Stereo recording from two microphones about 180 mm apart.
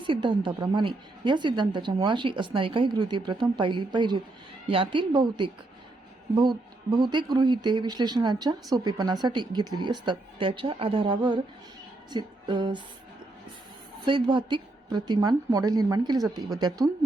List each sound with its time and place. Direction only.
0.0 s a woman's voice: 25° right (ahead or behind)
14.0 s a woman's voice: 25° right (ahead or behind)